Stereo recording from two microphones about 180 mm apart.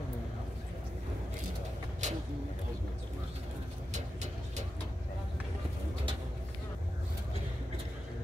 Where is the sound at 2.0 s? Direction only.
40° right (ahead or behind).